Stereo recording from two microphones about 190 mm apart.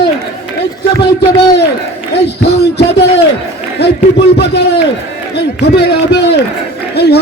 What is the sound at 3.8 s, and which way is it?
A man's voice, 60° left (ahead or behind).